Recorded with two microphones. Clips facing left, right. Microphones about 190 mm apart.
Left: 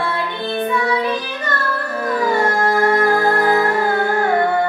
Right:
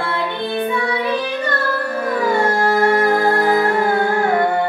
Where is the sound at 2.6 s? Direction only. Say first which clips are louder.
Right 1 dB; 25° right (ahead or behind).